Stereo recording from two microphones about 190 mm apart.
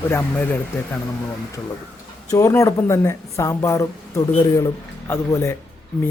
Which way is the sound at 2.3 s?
15° left (ahead or behind).